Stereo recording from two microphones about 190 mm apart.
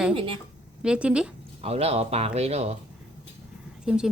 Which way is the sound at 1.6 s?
30° right (ahead or behind).